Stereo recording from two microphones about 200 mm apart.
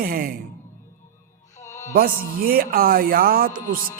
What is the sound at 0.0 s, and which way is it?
Speech, 45° right (ahead or behind).